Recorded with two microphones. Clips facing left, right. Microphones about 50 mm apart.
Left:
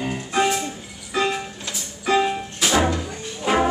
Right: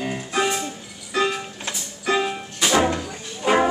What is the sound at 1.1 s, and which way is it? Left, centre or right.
Music, centre.